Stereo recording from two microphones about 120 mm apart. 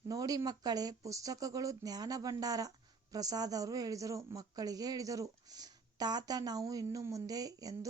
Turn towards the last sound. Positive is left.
turn(degrees=-30)  # may be behind; listen again after turning